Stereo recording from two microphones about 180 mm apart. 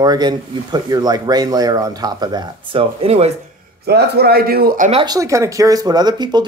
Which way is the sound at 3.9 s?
60° right (ahead or behind).